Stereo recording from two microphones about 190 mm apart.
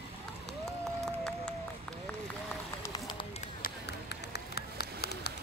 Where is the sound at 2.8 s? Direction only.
20° left (ahead or behind).